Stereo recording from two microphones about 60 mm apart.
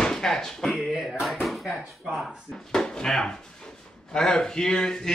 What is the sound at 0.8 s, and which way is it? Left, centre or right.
Speech, centre.